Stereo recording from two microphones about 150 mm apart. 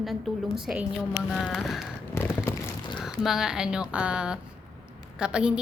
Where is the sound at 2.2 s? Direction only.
15° left (ahead or behind).